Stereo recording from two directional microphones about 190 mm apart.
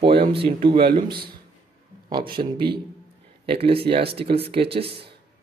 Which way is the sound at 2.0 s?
25° right (ahead or behind).